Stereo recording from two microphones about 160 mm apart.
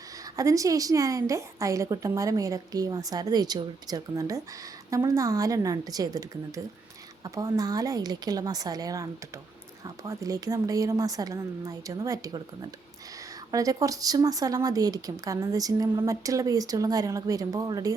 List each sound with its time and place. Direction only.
0.3 s speech: 20° right (ahead or behind)
7.3 s speech: 20° right (ahead or behind)
13.5 s speech: 20° right (ahead or behind)